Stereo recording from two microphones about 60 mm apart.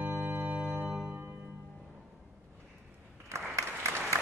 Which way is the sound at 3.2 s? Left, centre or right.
Right.